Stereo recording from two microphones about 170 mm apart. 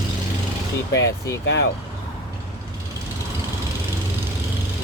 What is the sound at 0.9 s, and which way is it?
Speech, 90° left.